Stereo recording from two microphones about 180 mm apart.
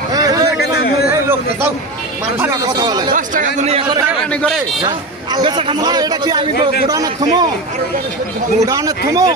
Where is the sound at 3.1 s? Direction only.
45° right (ahead or behind).